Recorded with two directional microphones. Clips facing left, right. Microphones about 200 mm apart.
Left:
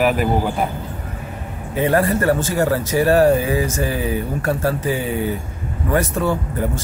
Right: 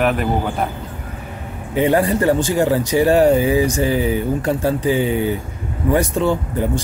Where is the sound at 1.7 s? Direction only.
15° right (ahead or behind).